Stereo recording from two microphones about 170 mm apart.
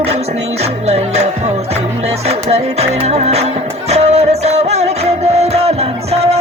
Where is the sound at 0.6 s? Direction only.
40° right (ahead or behind).